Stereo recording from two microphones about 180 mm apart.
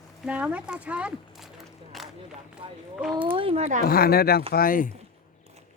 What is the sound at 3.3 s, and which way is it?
Speech, 30° right (ahead or behind).